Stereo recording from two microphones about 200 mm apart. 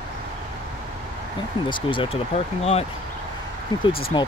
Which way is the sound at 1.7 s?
25° left (ahead or behind).